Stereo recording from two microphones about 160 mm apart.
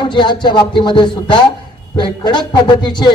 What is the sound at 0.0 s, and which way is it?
A man's voice, 30° left (ahead or behind).